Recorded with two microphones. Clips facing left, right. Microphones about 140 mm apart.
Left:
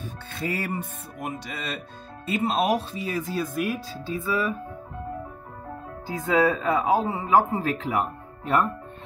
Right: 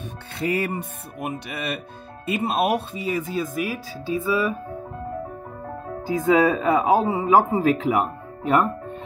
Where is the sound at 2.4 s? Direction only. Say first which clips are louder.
Right 1 dB; 10° right (ahead or behind).